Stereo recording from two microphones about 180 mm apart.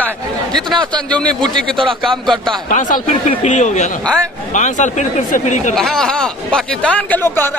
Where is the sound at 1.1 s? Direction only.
5° left (ahead or behind).